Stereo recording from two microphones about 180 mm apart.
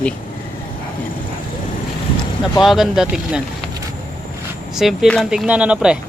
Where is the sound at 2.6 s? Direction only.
Centre (ahead or behind).